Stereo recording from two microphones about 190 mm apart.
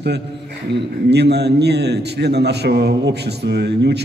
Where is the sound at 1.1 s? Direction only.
60° right (ahead or behind).